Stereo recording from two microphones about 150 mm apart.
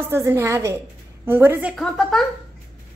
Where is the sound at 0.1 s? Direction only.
15° right (ahead or behind).